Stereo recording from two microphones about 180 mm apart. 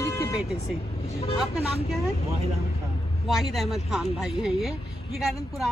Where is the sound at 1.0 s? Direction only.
35° left (ahead or behind).